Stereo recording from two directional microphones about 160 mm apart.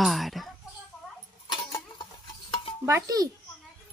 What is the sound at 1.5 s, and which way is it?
Tick-tock, 25° left (ahead or behind).